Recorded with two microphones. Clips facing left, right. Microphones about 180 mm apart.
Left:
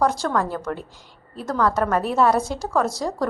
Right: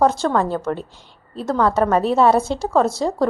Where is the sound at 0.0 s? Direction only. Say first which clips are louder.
Right 4 dB; 25° right (ahead or behind).